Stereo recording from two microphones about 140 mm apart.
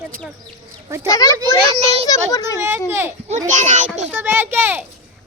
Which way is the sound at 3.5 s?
60° right (ahead or behind).